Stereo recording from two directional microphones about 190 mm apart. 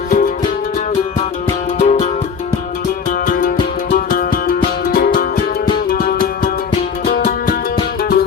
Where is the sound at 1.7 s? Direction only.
35° left (ahead or behind).